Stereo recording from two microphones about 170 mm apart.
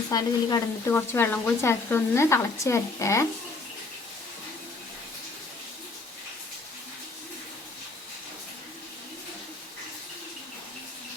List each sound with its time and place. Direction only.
0.1 s speech: 20° left (ahead or behind)